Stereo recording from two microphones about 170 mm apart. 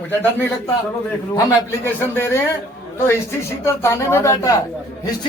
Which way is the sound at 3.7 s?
15° left (ahead or behind).